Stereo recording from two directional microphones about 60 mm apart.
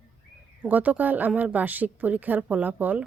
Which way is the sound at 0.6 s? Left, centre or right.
Right.